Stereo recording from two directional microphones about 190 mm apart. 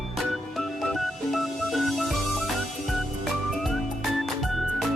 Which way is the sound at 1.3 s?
Centre (ahead or behind).